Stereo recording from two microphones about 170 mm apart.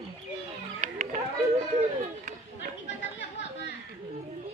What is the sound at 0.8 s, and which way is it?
Children playing, 45° right (ahead or behind).